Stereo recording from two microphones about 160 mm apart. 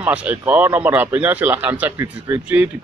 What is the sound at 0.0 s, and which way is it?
Speech, 10° right (ahead or behind).